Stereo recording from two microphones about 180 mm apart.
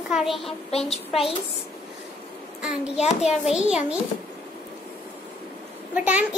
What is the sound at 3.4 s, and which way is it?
Speech, 5° right (ahead or behind).